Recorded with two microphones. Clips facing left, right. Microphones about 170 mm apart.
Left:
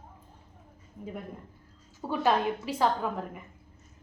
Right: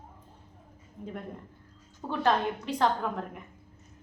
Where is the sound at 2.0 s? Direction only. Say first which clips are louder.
Left 1 dB; 10° left (ahead or behind).